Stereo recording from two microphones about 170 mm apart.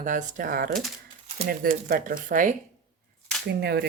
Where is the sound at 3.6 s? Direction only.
70° right (ahead or behind).